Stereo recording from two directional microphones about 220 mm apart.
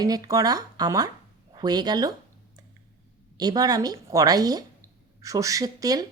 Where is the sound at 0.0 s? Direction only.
15° right (ahead or behind).